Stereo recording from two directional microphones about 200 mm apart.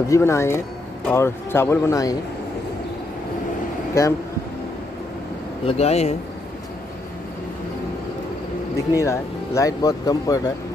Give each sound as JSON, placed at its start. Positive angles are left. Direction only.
{"t": 0.1, "sound": "speech", "side_deg": 15}
{"t": 4.0, "sound": "speech", "side_deg": 15}
{"t": 5.7, "sound": "speech", "side_deg": 30}
{"t": 8.9, "sound": "speech", "side_deg": 15}